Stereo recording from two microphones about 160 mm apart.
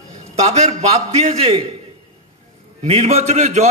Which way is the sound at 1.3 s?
40° right (ahead or behind).